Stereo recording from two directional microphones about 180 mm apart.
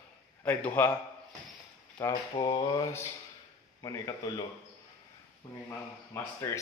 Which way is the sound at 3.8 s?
20° left (ahead or behind).